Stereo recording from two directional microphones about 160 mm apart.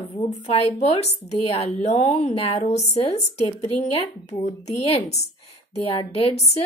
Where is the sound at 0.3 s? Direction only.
40° left (ahead or behind).